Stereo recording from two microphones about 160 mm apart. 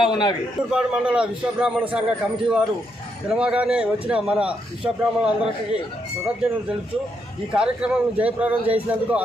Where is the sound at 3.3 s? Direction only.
5° right (ahead or behind).